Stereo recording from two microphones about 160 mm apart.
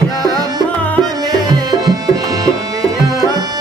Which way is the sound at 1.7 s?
20° right (ahead or behind).